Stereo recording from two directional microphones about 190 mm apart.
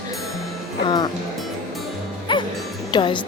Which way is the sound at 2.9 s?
25° left (ahead or behind).